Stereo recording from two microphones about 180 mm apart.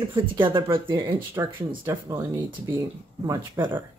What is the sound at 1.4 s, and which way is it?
Speech, 15° right (ahead or behind).